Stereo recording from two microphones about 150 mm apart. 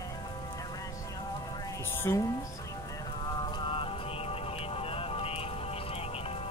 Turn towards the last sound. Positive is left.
turn(degrees=40)  # may be behind; listen again after turning